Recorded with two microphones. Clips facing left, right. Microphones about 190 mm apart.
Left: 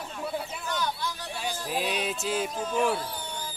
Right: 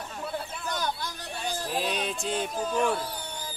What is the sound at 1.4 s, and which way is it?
Speech, 5° left (ahead or behind).